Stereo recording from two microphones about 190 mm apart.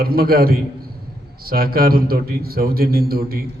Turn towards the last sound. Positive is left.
turn(degrees=-55)  # may be behind; listen again after turning